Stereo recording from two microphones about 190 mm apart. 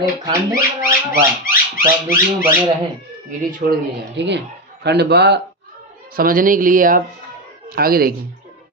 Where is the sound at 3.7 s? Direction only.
65° right (ahead or behind).